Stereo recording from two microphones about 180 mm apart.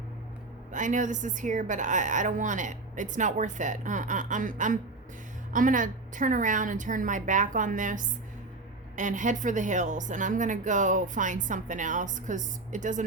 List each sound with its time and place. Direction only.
0.7 s a woman's voice: 45° right (ahead or behind)